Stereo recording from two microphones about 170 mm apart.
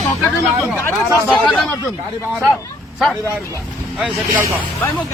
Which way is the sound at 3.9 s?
5° right (ahead or behind).